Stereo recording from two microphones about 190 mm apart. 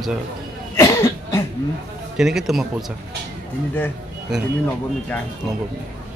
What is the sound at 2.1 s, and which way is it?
Speech, centre (ahead or behind).